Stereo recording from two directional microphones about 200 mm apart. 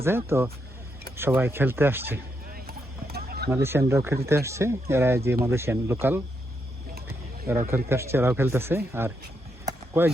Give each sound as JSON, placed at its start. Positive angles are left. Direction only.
{"t": 0.0, "sound": "speech", "side_deg": -10}
{"t": 2.5, "sound": "clip-clop", "side_deg": -50}
{"t": 3.5, "sound": "speech", "side_deg": -10}
{"t": 7.1, "sound": "a sound", "side_deg": -15}
{"t": 7.9, "sound": "speech", "side_deg": -15}
{"t": 9.6, "sound": "a sound", "side_deg": -10}